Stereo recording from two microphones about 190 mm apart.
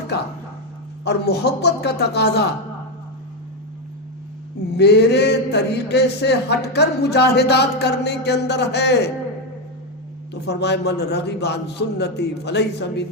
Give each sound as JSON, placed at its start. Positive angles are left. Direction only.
{"t": 1.0, "sound": "a man's voice", "side_deg": 60}
{"t": 4.7, "sound": "a man's voice", "side_deg": 60}
{"t": 10.3, "sound": "a man's voice", "side_deg": 60}